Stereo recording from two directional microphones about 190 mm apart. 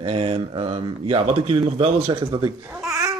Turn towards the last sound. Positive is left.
turn(degrees=-15)  # may be behind; listen again after turning